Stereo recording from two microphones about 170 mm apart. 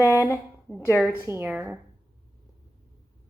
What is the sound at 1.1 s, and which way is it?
Speech, 10° right (ahead or behind).